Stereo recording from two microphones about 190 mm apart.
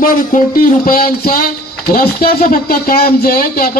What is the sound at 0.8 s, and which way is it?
Speech, 50° left (ahead or behind).